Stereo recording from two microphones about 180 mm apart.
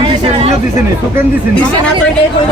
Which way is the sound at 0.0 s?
30° right (ahead or behind).